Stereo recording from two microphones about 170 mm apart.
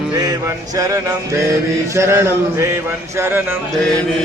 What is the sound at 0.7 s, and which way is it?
Speech, 20° right (ahead or behind).